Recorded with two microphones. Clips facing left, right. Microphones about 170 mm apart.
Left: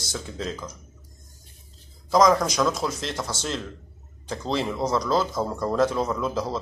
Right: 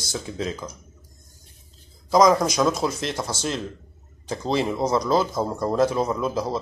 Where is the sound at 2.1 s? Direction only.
15° right (ahead or behind).